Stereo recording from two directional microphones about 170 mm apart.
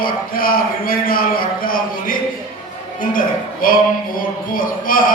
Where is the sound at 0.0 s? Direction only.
60° left (ahead or behind).